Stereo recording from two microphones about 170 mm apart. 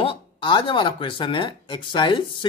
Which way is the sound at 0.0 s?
30° left (ahead or behind).